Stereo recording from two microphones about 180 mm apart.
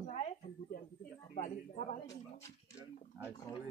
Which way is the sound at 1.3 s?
40° left (ahead or behind).